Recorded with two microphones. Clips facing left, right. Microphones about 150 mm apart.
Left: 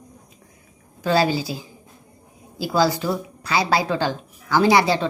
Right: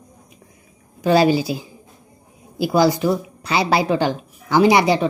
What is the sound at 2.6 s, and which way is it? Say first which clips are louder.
A woman's voice: right 4 dB; 20° right (ahead or behind).